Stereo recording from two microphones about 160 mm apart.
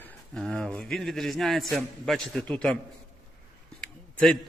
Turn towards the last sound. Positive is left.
turn(degrees=5)  # may be behind; listen again after turning